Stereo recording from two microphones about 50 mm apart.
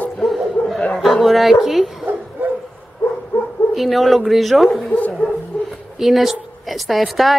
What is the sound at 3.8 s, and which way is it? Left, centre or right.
Speech, centre.